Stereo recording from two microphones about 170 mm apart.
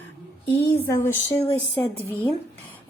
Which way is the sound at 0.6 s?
15° left (ahead or behind).